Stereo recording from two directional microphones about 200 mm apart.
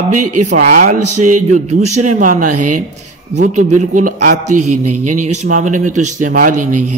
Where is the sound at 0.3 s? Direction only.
35° right (ahead or behind).